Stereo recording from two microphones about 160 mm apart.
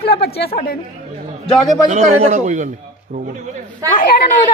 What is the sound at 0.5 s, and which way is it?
Speech, 70° left (ahead or behind).